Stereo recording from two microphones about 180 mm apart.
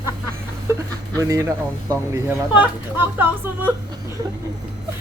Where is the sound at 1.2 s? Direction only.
15° right (ahead or behind).